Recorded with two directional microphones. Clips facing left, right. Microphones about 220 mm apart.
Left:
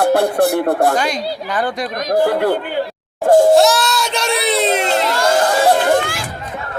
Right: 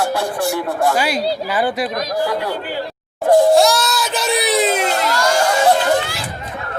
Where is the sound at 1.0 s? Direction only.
5° right (ahead or behind).